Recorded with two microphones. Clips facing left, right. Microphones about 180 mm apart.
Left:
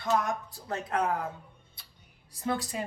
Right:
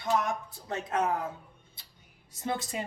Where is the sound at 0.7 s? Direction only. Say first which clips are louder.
Even; 20° right (ahead or behind).